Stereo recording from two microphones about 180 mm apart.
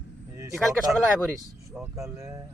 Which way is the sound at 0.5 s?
Centre (ahead or behind).